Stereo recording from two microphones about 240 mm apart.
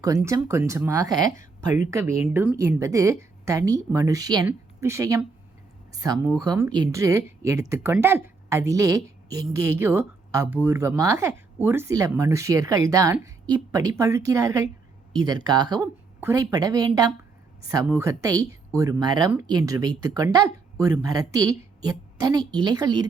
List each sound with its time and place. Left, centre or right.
0.0 s a woman's voice: centre